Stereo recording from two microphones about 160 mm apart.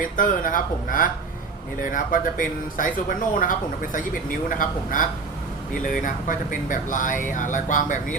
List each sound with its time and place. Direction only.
0.0 s speech: 55° left (ahead or behind)